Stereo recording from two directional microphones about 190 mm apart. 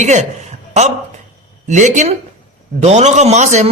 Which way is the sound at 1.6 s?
40° right (ahead or behind).